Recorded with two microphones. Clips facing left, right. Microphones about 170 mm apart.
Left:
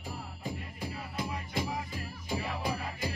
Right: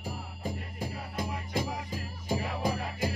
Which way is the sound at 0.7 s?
45° right (ahead or behind).